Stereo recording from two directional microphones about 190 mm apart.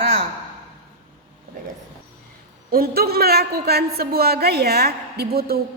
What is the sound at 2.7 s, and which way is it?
A woman's voice, 55° right (ahead or behind).